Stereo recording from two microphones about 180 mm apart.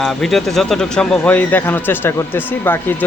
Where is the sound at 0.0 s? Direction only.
Centre (ahead or behind).